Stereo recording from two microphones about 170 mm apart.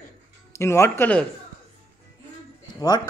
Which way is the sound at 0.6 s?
15° left (ahead or behind).